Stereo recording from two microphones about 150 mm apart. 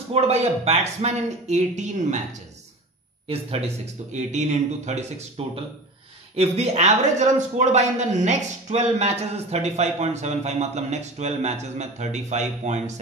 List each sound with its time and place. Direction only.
0.1 s a man's voice: 45° right (ahead or behind)
3.3 s a man's voice: 40° right (ahead or behind)
6.3 s a man's voice: 45° right (ahead or behind)